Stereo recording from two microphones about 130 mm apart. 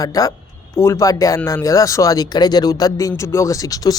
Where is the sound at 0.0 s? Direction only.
25° left (ahead or behind).